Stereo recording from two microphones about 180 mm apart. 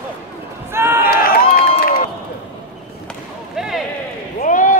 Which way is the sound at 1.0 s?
55° left (ahead or behind).